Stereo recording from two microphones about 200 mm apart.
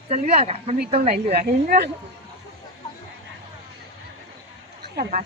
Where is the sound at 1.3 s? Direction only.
50° right (ahead or behind).